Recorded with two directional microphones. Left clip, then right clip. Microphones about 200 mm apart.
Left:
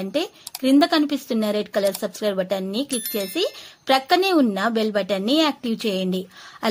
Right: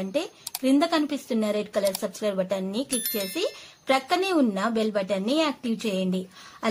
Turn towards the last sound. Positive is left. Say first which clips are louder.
# left 4 dB
turn(degrees=25)  # may be behind; listen again after turning